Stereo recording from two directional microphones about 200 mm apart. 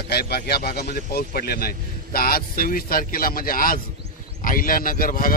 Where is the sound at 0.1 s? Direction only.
50° left (ahead or behind).